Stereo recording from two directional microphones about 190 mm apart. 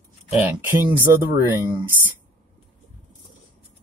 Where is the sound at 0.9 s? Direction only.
15° right (ahead or behind).